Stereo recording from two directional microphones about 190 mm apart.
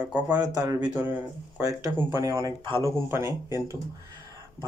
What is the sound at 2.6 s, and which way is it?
Speech, 25° right (ahead or behind).